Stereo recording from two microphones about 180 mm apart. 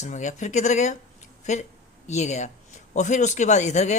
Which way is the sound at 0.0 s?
40° left (ahead or behind).